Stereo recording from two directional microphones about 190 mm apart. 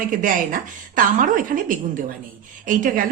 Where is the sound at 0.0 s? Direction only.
45° right (ahead or behind).